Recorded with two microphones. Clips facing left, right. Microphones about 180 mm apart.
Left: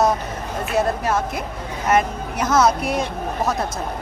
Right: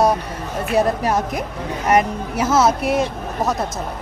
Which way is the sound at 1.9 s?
5° right (ahead or behind).